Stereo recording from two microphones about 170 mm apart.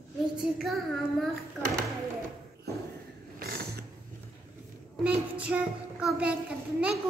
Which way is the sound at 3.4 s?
65° right (ahead or behind).